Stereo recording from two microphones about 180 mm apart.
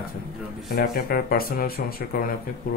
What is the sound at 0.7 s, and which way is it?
Speech, 55° left (ahead or behind).